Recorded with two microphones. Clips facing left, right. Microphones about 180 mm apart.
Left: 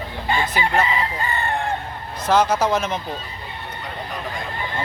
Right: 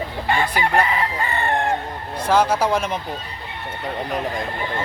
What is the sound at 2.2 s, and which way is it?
Speech, 10° right (ahead or behind).